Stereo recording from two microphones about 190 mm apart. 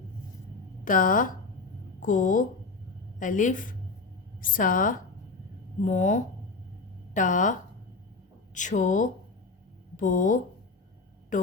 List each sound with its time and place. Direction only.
0.9 s a woman's voice: 45° left (ahead or behind)
8.5 s speech: 40° left (ahead or behind)